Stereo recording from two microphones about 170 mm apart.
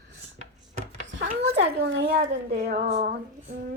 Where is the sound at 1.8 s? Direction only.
80° right.